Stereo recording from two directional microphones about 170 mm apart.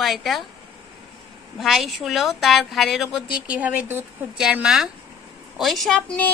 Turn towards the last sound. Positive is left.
turn(degrees=5)  # may be behind; listen again after turning